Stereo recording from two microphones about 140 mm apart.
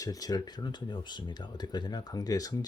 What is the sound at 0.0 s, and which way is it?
Speech, 25° left (ahead or behind).